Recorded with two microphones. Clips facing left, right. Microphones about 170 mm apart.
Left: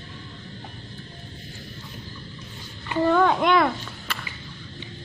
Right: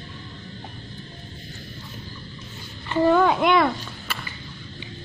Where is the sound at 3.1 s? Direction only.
10° right (ahead or behind).